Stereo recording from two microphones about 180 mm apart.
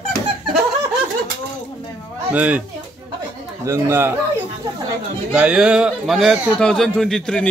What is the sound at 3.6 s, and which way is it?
Speech, 15° right (ahead or behind).